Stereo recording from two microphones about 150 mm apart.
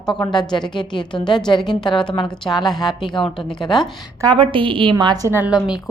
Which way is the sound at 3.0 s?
35° left (ahead or behind).